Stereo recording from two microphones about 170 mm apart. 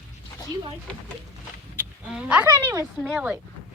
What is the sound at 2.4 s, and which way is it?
Speech, 20° right (ahead or behind).